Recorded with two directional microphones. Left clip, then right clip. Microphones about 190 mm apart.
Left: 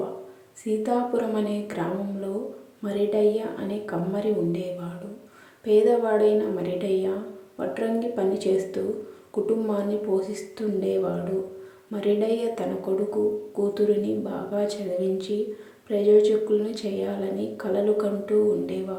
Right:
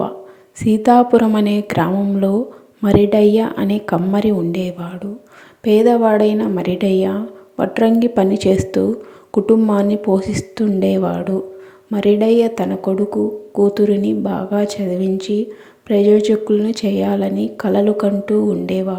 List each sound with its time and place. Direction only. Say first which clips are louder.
0.6 s speech: right 13 dB; 45° right (ahead or behind)